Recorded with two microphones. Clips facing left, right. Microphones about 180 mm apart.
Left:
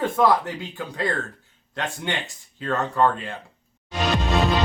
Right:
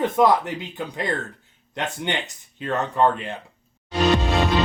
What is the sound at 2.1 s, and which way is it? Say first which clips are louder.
Speech: right 2 dB; 20° right (ahead or behind).